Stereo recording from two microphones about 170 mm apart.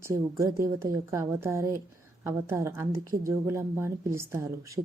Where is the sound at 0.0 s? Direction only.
15° right (ahead or behind).